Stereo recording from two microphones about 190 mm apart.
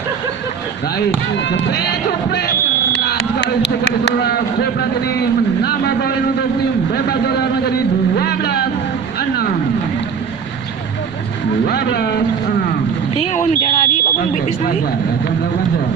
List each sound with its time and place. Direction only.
0.9 s speech: 70° left (ahead or behind)
2.9 s a sound: 60° left (ahead or behind)
4.0 s a man's voice: 60° left (ahead or behind)
8.1 s music: 55° left (ahead or behind)
9.1 s a sound: 55° left (ahead or behind)
11.6 s speech: 55° left (ahead or behind)
13.2 s speech: 40° left (ahead or behind)